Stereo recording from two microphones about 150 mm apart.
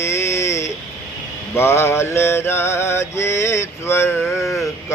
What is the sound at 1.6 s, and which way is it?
Mantra, 15° left (ahead or behind).